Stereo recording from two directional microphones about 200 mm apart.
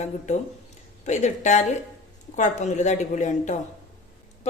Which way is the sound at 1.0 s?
35° left (ahead or behind).